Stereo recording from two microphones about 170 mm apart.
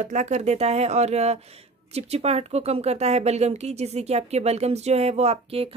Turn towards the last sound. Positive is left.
turn(degrees=-35)  # may be behind; listen again after turning